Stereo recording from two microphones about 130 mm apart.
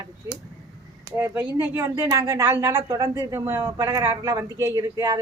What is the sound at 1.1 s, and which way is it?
A woman's voice, 20° right (ahead or behind).